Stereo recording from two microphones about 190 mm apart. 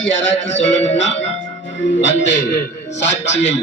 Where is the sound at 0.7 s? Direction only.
75° left (ahead or behind).